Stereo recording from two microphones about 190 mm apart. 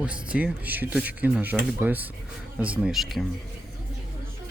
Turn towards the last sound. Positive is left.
turn(degrees=0)  # may be behind; listen again after turning